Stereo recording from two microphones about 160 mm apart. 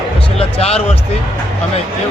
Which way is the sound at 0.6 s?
40° left (ahead or behind).